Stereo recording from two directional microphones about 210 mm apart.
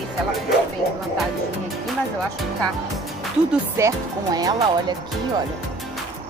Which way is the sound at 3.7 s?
15° right (ahead or behind).